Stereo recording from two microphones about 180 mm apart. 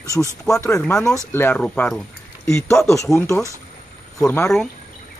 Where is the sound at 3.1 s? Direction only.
15° left (ahead or behind).